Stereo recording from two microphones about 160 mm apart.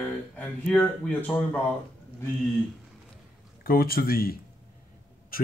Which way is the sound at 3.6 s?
70° left (ahead or behind).